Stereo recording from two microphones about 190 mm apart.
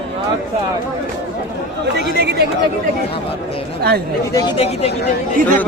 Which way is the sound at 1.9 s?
60° right (ahead or behind).